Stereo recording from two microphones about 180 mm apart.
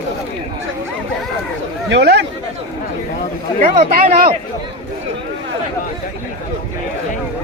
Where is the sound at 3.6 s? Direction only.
50° right (ahead or behind).